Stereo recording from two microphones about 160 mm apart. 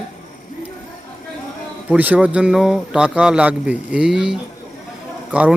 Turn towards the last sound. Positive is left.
turn(degrees=-5)  # may be behind; listen again after turning